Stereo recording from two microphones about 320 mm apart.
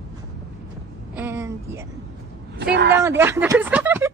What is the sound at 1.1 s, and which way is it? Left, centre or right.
Speech, centre.